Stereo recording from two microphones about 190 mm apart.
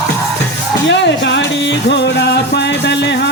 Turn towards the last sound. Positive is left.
turn(degrees=65)  # may be behind; listen again after turning